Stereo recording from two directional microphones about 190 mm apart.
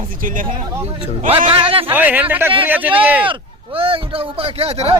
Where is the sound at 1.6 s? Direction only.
30° right (ahead or behind).